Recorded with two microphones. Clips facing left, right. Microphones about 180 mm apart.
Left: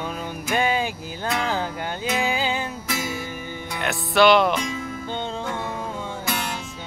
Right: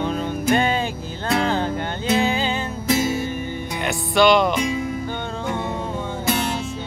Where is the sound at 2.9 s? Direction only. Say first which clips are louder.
Right 12 dB; 25° right (ahead or behind).